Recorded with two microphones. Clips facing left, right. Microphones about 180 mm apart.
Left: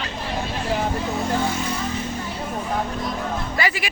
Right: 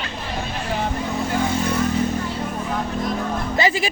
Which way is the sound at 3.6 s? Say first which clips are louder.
Right 6 dB; 25° right (ahead or behind).